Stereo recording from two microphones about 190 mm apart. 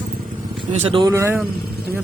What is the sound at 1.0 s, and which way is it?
Speech, 15° right (ahead or behind).